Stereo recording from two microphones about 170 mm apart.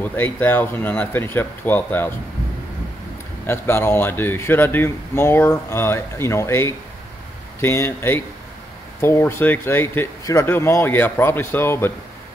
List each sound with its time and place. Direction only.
0.0 s speech: 10° left (ahead or behind)
3.4 s speech: 15° left (ahead or behind)